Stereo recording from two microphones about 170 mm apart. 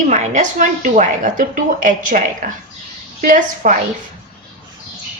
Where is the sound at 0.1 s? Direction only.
45° right (ahead or behind).